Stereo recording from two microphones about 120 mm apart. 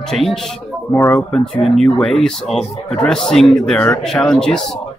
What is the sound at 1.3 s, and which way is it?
A man's voice, 5° left (ahead or behind).